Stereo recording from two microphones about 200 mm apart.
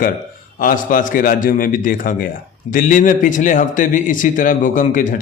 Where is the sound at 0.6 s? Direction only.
45° left (ahead or behind).